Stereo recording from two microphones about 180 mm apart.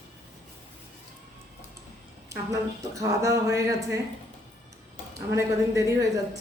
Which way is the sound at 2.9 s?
15° right (ahead or behind).